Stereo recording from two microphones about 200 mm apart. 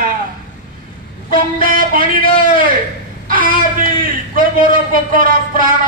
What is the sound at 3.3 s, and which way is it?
Speech, 45° right (ahead or behind).